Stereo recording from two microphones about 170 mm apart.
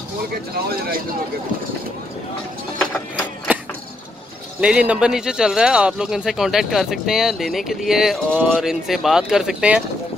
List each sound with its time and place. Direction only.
0.7 s speech: 60° right (ahead or behind)
3.5 s a sound: 10° right (ahead or behind)
4.6 s speech: 5° right (ahead or behind)